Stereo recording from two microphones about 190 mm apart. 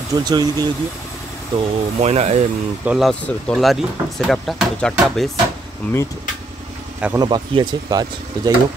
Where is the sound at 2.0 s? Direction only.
35° right (ahead or behind).